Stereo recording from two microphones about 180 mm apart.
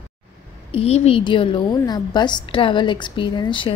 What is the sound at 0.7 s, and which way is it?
A woman's voice, 35° left (ahead or behind).